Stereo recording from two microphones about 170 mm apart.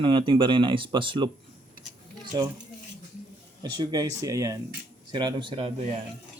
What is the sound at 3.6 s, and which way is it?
Speech, 25° right (ahead or behind).